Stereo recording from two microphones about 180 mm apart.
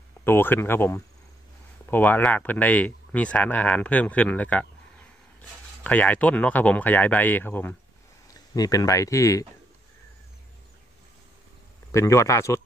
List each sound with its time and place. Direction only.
0.2 s speech: 10° left (ahead or behind)
5.9 s speech: 10° left (ahead or behind)
11.9 s speech: 15° left (ahead or behind)